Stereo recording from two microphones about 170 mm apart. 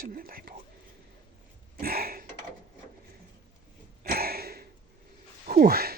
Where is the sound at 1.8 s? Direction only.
60° right (ahead or behind).